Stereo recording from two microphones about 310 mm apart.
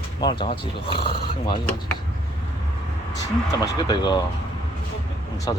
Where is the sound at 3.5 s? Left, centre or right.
Centre.